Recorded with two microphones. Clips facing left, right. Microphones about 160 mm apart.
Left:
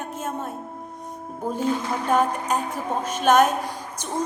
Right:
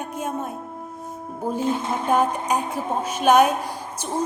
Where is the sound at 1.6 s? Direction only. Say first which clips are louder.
Left 1 dB; 25° right (ahead or behind).